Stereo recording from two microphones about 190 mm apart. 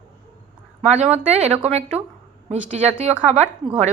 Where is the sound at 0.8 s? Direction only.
35° right (ahead or behind).